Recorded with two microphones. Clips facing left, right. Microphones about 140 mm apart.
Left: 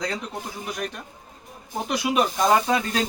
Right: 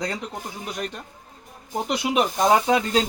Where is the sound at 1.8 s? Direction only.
20° right (ahead or behind).